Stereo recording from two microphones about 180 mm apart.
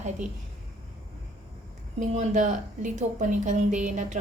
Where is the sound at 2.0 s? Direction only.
40° right (ahead or behind).